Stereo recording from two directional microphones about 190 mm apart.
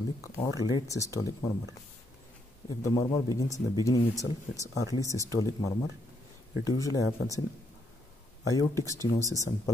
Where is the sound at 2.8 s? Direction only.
20° left (ahead or behind).